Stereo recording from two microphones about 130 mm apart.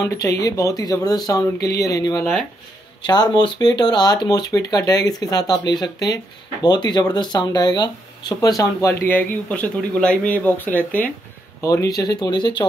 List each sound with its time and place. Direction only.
0.0 s speech: 25° left (ahead or behind)
11.6 s speech: 25° left (ahead or behind)